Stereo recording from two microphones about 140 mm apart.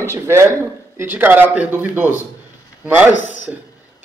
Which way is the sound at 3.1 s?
65° left (ahead or behind).